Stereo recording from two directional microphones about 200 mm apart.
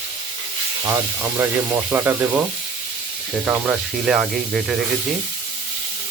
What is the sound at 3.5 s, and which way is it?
Speech, centre (ahead or behind).